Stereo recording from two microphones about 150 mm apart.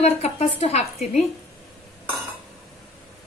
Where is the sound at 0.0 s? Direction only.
45° left (ahead or behind).